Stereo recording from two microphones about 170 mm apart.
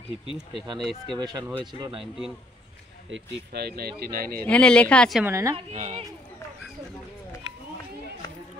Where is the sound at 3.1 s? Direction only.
70° right (ahead or behind).